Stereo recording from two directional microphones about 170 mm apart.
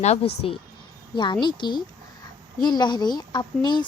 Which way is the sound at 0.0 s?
40° left (ahead or behind).